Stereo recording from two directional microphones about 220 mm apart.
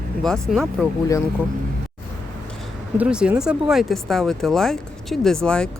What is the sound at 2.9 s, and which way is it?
Speech, 5° right (ahead or behind).